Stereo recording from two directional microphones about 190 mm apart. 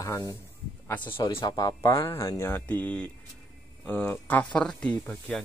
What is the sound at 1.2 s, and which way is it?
Speech, 25° left (ahead or behind).